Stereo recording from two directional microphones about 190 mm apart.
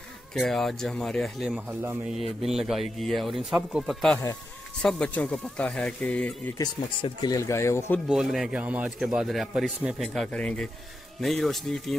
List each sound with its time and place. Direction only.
0.3 s a man's voice: centre (ahead or behind)
1.8 s speech: 15° right (ahead or behind)
2.1 s a man's voice: centre (ahead or behind)
6.6 s speech: 20° left (ahead or behind)
8.1 s a man's voice: centre (ahead or behind)